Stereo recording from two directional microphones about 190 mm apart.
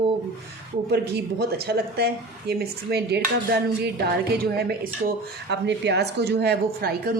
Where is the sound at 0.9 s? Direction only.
55° right (ahead or behind).